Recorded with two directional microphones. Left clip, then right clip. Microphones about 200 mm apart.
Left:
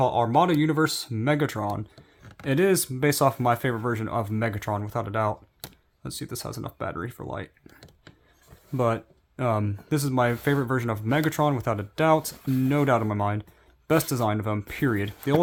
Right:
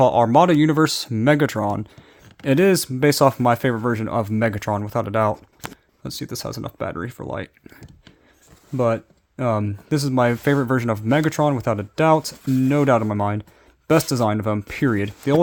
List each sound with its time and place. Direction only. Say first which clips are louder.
0.0 s speech: right 7 dB; 45° right (ahead or behind)
8.7 s speech: right 5 dB; 30° right (ahead or behind)